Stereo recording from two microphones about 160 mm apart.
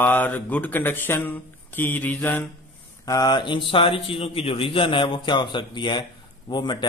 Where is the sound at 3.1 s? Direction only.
25° left (ahead or behind).